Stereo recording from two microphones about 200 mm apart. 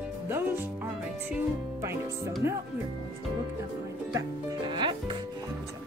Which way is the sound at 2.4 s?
15° right (ahead or behind).